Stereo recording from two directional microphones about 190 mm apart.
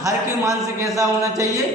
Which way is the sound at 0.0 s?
20° right (ahead or behind).